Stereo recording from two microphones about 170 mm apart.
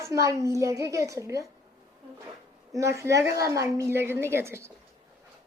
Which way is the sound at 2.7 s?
15° right (ahead or behind).